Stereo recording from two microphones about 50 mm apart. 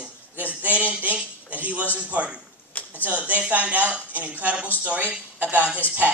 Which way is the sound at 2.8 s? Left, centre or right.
Left.